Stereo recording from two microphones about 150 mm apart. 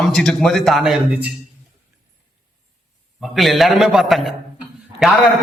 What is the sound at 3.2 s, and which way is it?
A man's voice, centre (ahead or behind).